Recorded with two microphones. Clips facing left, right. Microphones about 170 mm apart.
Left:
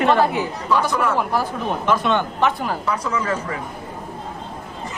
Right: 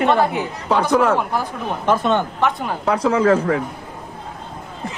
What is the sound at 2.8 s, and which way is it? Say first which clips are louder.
Speech: right 11 dB; 90° right.